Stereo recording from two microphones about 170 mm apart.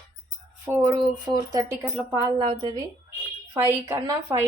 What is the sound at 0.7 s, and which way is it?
Speech, 15° right (ahead or behind).